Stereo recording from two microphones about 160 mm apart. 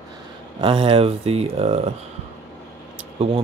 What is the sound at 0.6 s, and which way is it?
Speech, 35° right (ahead or behind).